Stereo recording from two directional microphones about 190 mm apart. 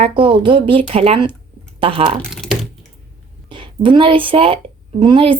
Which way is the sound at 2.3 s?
Centre (ahead or behind).